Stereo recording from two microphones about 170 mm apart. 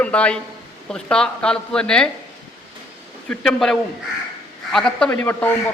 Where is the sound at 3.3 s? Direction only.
5° left (ahead or behind).